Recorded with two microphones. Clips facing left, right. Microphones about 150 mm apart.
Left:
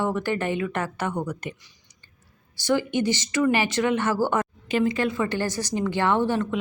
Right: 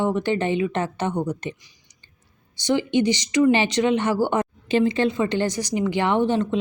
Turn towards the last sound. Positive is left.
turn(degrees=-20)  # may be behind; listen again after turning